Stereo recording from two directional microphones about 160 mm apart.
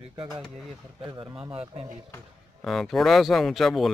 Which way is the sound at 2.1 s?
5° left (ahead or behind).